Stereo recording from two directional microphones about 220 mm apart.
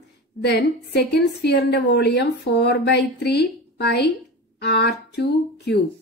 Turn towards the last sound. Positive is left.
turn(degrees=50)  # may be behind; listen again after turning